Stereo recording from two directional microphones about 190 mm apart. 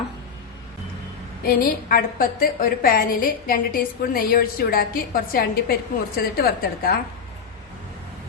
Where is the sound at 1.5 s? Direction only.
50° left (ahead or behind).